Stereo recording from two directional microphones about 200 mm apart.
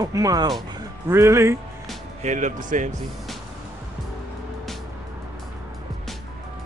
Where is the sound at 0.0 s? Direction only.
15° right (ahead or behind).